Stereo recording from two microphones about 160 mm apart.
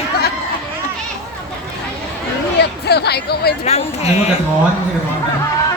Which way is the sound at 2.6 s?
90° left.